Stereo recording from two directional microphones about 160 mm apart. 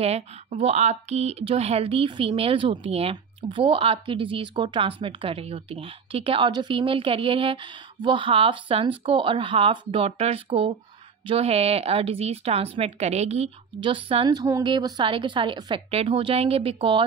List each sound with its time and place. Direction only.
0.0 s speech: 40° right (ahead or behind)